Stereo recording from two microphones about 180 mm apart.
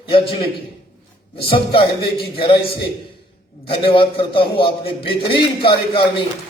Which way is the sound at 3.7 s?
30° left (ahead or behind).